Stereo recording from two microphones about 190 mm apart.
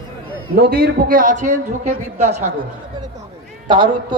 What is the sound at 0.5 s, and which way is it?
A man's voice, 55° right (ahead or behind).